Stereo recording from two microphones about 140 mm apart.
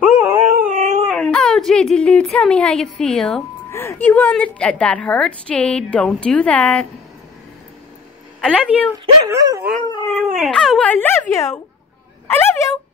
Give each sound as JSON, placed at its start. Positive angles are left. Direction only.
{"t": 0.0, "sound": "dog", "side_deg": -10}
{"t": 0.7, "sound": "dog", "side_deg": -65}
{"t": 1.0, "sound": "a woman's voice", "side_deg": 5}
{"t": 3.7, "sound": "a woman's voice", "side_deg": 20}
{"t": 8.4, "sound": "speech", "side_deg": 5}
{"t": 9.3, "sound": "dog", "side_deg": -25}
{"t": 9.8, "sound": "speech", "side_deg": 25}
{"t": 10.1, "sound": "a woman's voice", "side_deg": 0}